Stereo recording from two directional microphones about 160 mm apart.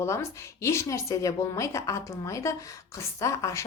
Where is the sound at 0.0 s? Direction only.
15° left (ahead or behind).